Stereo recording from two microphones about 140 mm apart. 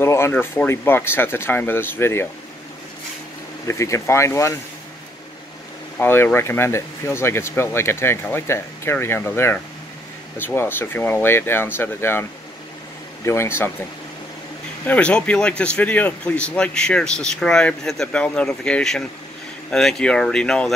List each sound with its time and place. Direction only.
0.0 s speech: 20° left (ahead or behind)
3.6 s speech: 20° left (ahead or behind)
5.9 s speech: 15° left (ahead or behind)
14.9 s speech: 10° left (ahead or behind)